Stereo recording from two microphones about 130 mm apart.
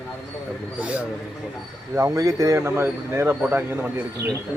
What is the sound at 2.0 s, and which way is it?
Speech, 25° right (ahead or behind).